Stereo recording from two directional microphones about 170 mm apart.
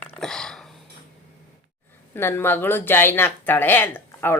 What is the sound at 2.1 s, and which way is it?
A woman's voice, 15° left (ahead or behind).